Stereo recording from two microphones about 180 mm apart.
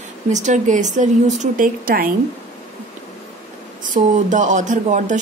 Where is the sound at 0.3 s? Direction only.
40° right (ahead or behind).